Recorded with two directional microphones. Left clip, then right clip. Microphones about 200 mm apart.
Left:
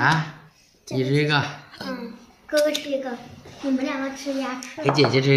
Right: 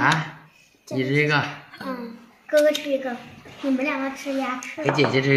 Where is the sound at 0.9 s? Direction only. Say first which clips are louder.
Right 1 dB; 40° left (ahead or behind).